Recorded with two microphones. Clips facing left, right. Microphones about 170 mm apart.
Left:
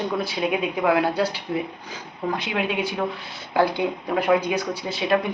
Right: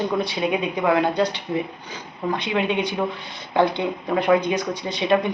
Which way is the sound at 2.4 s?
5° left (ahead or behind).